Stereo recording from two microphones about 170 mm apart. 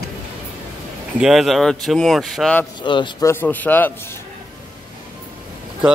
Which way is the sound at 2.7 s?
30° left (ahead or behind).